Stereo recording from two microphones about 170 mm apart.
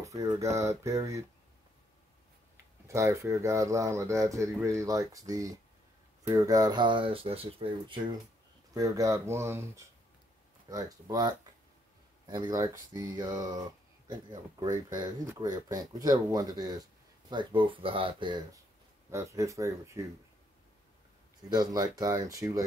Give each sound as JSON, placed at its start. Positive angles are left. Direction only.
{"t": 0.0, "sound": "speech", "side_deg": -20}
{"t": 2.9, "sound": "speech", "side_deg": -15}
{"t": 8.7, "sound": "speech", "side_deg": -20}
{"t": 21.5, "sound": "speech", "side_deg": -25}